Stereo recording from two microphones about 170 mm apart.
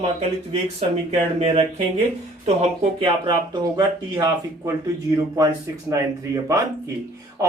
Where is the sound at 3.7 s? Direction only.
20° right (ahead or behind).